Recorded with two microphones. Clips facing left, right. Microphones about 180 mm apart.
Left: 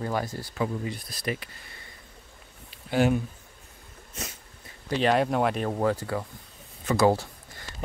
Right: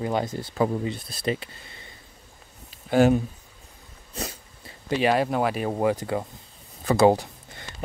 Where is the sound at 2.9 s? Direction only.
45° right (ahead or behind).